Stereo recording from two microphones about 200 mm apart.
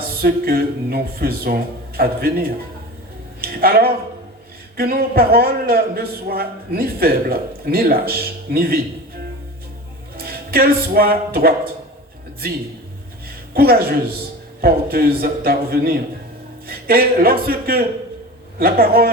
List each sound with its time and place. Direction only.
0.2 s a man's voice: 50° right (ahead or behind)
10.2 s speech: 50° right (ahead or behind)
13.5 s a man's voice: 50° right (ahead or behind)